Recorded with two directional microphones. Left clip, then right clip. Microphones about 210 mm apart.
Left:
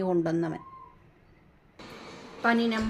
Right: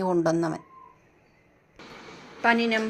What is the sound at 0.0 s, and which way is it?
Speech, 10° right (ahead or behind).